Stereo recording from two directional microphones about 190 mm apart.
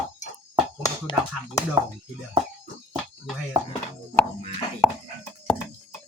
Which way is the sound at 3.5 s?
25° right (ahead or behind).